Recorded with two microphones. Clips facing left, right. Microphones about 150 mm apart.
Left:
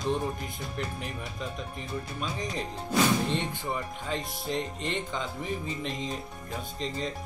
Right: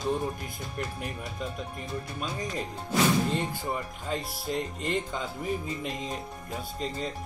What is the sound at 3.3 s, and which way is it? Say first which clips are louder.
Speech: right 1 dB; 5° right (ahead or behind).